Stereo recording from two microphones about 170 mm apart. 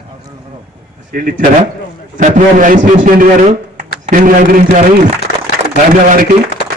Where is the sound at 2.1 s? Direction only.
50° right (ahead or behind).